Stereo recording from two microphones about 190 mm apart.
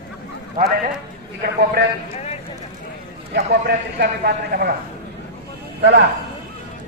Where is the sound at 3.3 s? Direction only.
60° right (ahead or behind).